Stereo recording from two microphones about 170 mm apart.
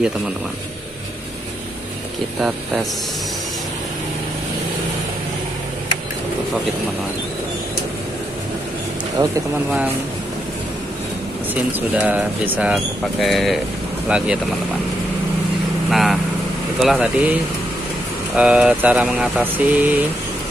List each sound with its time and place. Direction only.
2.4 s speech: centre (ahead or behind)
9.2 s speech: 20° right (ahead or behind)
11.9 s speech: 10° right (ahead or behind)
15.9 s speech: centre (ahead or behind)